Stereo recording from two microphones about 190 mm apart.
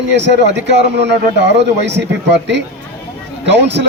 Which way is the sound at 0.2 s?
65° right (ahead or behind).